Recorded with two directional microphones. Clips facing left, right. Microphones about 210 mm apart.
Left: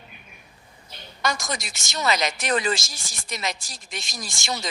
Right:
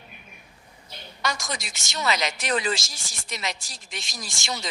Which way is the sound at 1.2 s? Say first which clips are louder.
Left 3 dB; 45° left (ahead or behind).